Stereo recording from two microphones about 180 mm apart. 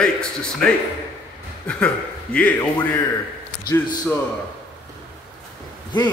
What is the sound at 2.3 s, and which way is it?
Speech, 10° left (ahead or behind).